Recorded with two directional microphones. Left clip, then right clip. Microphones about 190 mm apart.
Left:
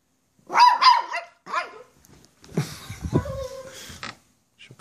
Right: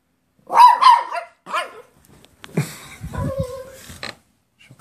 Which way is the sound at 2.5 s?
10° right (ahead or behind).